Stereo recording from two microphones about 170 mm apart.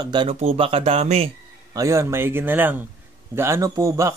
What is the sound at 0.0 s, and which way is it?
Speech, 25° right (ahead or behind).